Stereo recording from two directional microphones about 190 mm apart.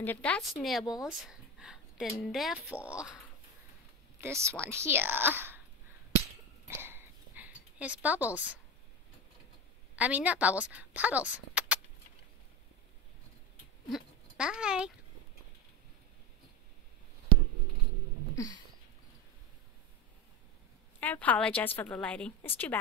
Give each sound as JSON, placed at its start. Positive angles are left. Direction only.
{"t": 0.0, "sound": "speech", "side_deg": 10}
{"t": 4.2, "sound": "speech", "side_deg": -15}
{"t": 6.7, "sound": "a sound", "side_deg": -10}
{"t": 9.9, "sound": "a woman's voice", "side_deg": -5}
{"t": 13.9, "sound": "a child's voice", "side_deg": -5}
{"t": 18.3, "sound": "a sound", "side_deg": 20}
{"t": 21.0, "sound": "a woman's voice", "side_deg": 10}